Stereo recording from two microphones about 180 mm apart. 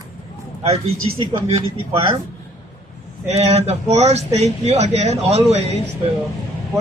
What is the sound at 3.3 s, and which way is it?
Speech, 35° right (ahead or behind).